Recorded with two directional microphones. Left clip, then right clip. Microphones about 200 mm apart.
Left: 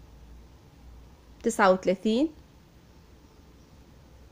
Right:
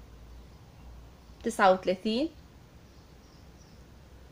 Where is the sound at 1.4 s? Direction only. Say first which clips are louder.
Left 1 dB; 40° left (ahead or behind).